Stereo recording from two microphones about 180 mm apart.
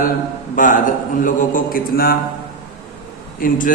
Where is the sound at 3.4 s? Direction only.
50° left (ahead or behind).